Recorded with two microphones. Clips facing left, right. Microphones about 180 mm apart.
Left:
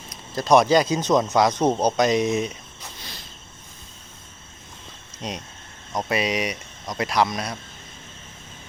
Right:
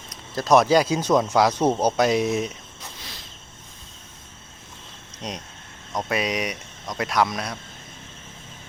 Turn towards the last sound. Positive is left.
turn(degrees=0)  # may be behind; listen again after turning